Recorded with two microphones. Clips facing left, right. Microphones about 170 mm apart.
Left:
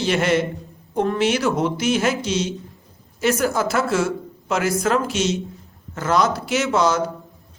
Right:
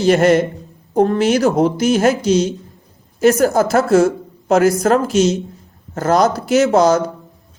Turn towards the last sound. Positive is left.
turn(degrees=-40)  # may be behind; listen again after turning